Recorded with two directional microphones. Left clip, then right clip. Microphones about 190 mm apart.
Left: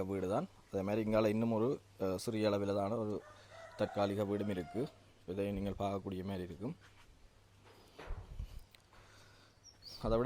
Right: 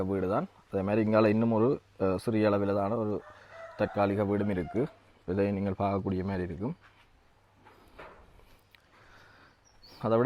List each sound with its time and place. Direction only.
0.0 s speech: 30° right (ahead or behind)
9.9 s speech: 40° right (ahead or behind)